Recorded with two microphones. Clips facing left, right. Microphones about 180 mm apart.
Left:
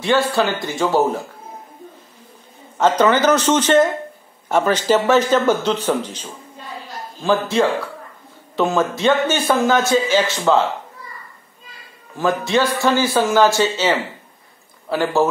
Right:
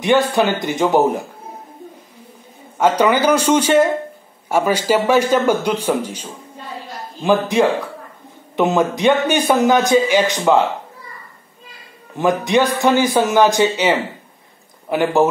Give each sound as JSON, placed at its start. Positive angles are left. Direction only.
{"t": 0.0, "sound": "a man's voice", "side_deg": -20}
{"t": 2.8, "sound": "a man's voice", "side_deg": -10}
{"t": 12.2, "sound": "a man's voice", "side_deg": -15}